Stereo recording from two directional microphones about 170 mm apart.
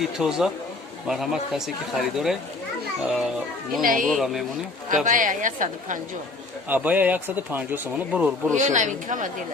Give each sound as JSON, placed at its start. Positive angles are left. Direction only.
{"t": 0.0, "sound": "speech", "side_deg": -5}
{"t": 3.8, "sound": "a woman's voice", "side_deg": -55}
{"t": 4.1, "sound": "speech", "side_deg": 0}
{"t": 5.0, "sound": "a woman's voice", "side_deg": -50}
{"t": 6.7, "sound": "speech", "side_deg": -10}
{"t": 8.5, "sound": "a woman's voice", "side_deg": -45}